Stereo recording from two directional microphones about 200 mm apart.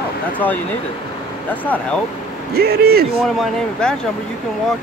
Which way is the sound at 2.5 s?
50° right (ahead or behind).